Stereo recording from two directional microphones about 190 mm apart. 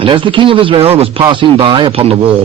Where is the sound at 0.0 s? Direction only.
25° right (ahead or behind).